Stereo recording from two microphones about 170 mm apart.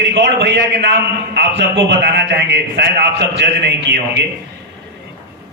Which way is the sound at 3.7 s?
90° right.